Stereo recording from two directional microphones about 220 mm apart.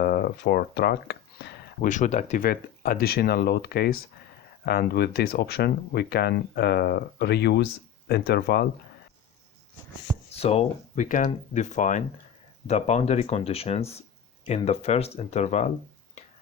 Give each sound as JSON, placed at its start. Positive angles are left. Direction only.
{"t": 0.0, "sound": "a sound", "side_deg": 45}
{"t": 1.9, "sound": "speech", "side_deg": 35}
{"t": 10.3, "sound": "speech", "side_deg": 30}